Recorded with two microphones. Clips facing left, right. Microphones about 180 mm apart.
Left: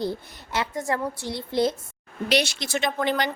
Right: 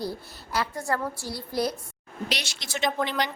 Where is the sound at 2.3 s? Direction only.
55° left (ahead or behind).